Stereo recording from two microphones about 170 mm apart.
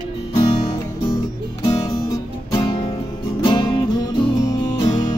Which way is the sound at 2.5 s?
30° left (ahead or behind).